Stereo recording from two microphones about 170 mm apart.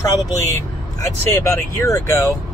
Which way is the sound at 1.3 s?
15° left (ahead or behind).